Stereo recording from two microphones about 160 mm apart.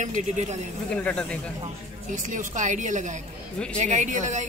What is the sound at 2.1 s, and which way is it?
A woman's voice, 50° right (ahead or behind).